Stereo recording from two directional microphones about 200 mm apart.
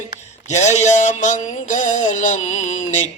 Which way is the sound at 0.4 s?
35° left (ahead or behind).